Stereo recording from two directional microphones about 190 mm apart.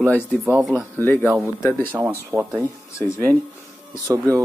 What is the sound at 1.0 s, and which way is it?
Speech, 10° left (ahead or behind).